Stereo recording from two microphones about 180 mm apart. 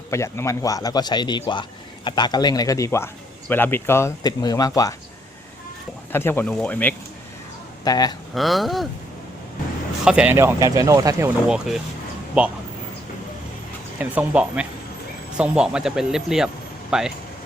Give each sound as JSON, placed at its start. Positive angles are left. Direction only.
{"t": 0.1, "sound": "a man's voice", "side_deg": 15}
{"t": 6.1, "sound": "speech", "side_deg": 10}
{"t": 7.9, "sound": "a man's voice", "side_deg": 20}
{"t": 8.4, "sound": "speech", "side_deg": 0}
{"t": 10.0, "sound": "speech", "side_deg": -5}
{"t": 11.4, "sound": "speech", "side_deg": -5}
{"t": 14.0, "sound": "speech", "side_deg": -5}